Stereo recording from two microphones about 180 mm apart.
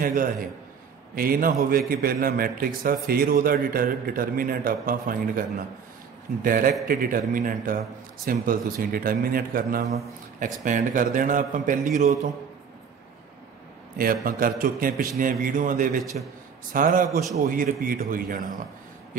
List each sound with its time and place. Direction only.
0.0 s a man's voice: 50° right (ahead or behind)
6.4 s a man's voice: 50° right (ahead or behind)
9.8 s a man's voice: 40° right (ahead or behind)
13.9 s a man's voice: 50° right (ahead or behind)